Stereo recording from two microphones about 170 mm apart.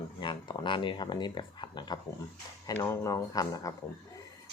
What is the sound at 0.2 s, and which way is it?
Speech, 30° left (ahead or behind).